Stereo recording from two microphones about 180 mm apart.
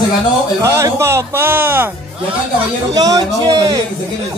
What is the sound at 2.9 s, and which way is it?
Speech, 20° right (ahead or behind).